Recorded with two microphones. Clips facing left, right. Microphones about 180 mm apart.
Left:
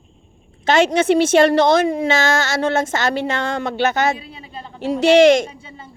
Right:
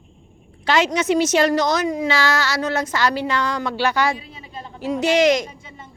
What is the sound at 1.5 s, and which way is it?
A woman's voice, 30° left (ahead or behind).